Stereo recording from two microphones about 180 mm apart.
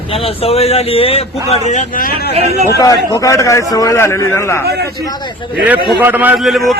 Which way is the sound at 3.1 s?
15° left (ahead or behind).